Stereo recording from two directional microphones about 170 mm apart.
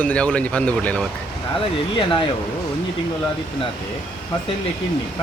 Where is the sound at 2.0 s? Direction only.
30° left (ahead or behind).